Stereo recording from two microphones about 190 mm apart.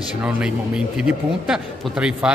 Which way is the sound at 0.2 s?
5° right (ahead or behind).